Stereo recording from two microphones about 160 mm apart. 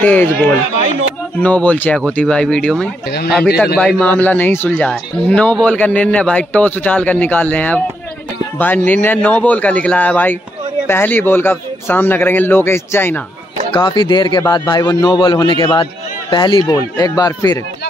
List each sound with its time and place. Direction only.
0.0 s speech: 10° left (ahead or behind)
1.4 s speech: 10° left (ahead or behind)
3.1 s speech: 75° left (ahead or behind)
3.6 s speech: 5° left (ahead or behind)
13.8 s a man's voice: 30° left (ahead or behind)